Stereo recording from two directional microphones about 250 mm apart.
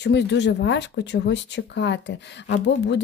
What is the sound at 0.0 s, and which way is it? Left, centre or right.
Speech, left.